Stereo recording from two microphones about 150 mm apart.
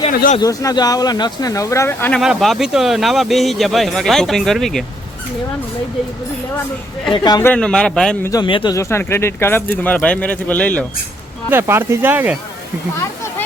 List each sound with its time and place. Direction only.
0.1 s speech: 70° left (ahead or behind)
0.3 s speech: 25° left (ahead or behind)
2.2 s speech: centre (ahead or behind)
7.1 s speech: 30° left (ahead or behind)
7.4 s speech: 5° left (ahead or behind)
8.2 s speech: 25° left (ahead or behind)
8.7 s speech: 20° left (ahead or behind)
11.5 s speech: 15° right (ahead or behind)